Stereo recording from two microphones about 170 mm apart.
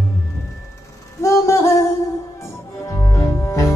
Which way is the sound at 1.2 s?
15° left (ahead or behind).